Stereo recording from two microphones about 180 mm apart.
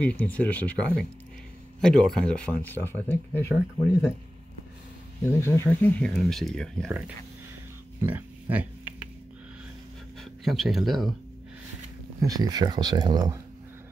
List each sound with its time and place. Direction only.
0.0 s speech: 10° left (ahead or behind)
5.4 s speech: 15° left (ahead or behind)
8.0 s oink: 10° right (ahead or behind)
10.4 s speech: centre (ahead or behind)
12.2 s speech: 20° right (ahead or behind)